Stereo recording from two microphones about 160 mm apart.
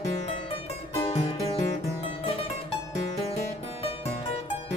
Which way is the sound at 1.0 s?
40° left (ahead or behind).